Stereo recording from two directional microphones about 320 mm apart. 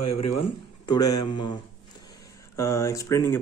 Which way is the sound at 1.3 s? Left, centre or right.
Centre.